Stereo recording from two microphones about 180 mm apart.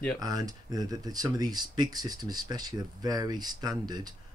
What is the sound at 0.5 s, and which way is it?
Speech, 20° right (ahead or behind).